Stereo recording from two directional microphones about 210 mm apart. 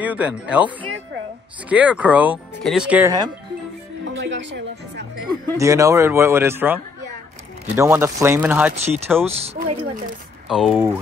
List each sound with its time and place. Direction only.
0.0 s speech: 5° right (ahead or behind)
4.0 s speech: 60° right (ahead or behind)
5.6 s speech: 15° right (ahead or behind)
9.3 s a woman's voice: 30° right (ahead or behind)
10.5 s speech: centre (ahead or behind)